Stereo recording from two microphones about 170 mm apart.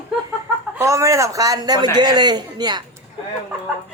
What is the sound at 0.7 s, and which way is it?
A woman's voice, 20° right (ahead or behind).